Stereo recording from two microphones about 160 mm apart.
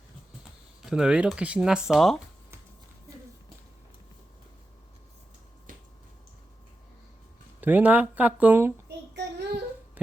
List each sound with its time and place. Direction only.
0.9 s speech: 5° right (ahead or behind)
7.6 s speech: 10° right (ahead or behind)
9.1 s child singing: 90° right